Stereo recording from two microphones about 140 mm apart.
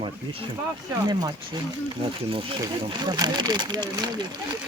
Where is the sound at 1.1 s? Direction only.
30° right (ahead or behind).